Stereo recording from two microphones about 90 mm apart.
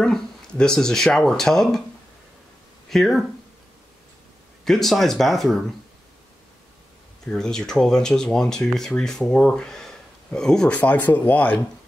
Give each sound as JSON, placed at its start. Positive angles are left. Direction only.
{"t": 0.0, "sound": "speech", "side_deg": 10}
{"t": 2.9, "sound": "speech", "side_deg": 5}
{"t": 4.6, "sound": "speech", "side_deg": 5}
{"t": 7.2, "sound": "speech", "side_deg": 5}
{"t": 10.8, "sound": "speech", "side_deg": 20}